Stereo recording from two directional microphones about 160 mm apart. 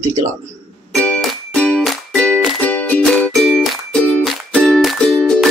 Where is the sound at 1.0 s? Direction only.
5° left (ahead or behind).